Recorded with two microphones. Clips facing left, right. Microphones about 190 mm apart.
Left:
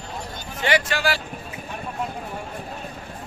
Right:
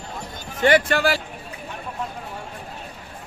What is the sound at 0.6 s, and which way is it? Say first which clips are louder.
Speech: right 5 dB; 50° right (ahead or behind).